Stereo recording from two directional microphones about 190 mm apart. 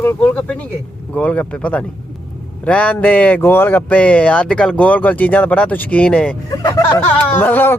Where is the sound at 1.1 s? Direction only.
5° left (ahead or behind).